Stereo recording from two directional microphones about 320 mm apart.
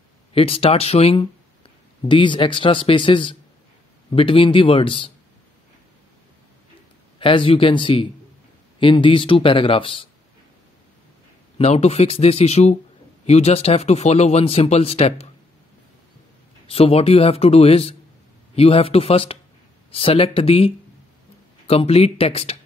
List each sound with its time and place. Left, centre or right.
0.3 s speech: centre
7.2 s speech: centre
11.5 s speech: centre
16.6 s speech: centre